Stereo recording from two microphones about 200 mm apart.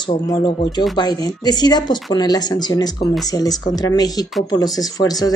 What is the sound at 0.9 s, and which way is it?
A woman's voice, 20° left (ahead or behind).